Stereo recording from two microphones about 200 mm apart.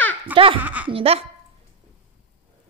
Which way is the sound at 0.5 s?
10° right (ahead or behind).